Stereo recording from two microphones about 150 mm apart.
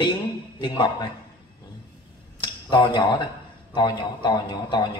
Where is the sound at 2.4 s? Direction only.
30° left (ahead or behind).